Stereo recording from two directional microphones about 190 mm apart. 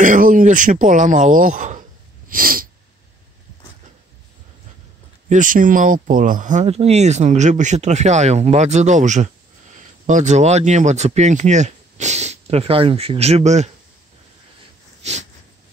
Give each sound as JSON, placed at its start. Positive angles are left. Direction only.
{"t": 0.0, "sound": "throat clearing", "side_deg": -45}
{"t": 5.3, "sound": "speech", "side_deg": -45}